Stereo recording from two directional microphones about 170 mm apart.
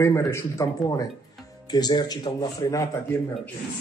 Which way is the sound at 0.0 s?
15° left (ahead or behind).